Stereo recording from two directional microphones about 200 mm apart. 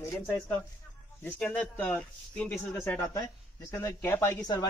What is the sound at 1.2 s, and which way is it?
Speech, 5° left (ahead or behind).